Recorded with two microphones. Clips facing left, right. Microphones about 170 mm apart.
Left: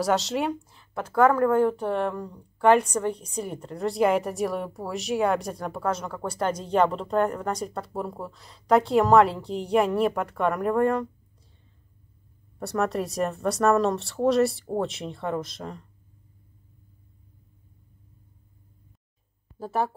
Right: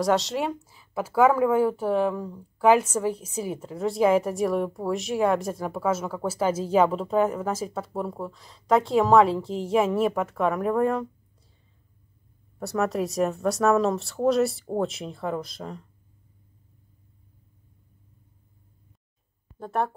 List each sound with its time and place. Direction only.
0.0 s speech: centre (ahead or behind)
12.5 s speech: centre (ahead or behind)
19.6 s speech: 5° left (ahead or behind)